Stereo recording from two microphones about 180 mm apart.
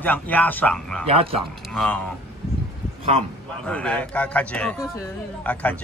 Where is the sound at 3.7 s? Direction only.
5° left (ahead or behind).